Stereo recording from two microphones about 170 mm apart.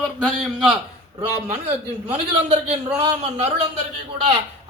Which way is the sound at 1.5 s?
40° right (ahead or behind).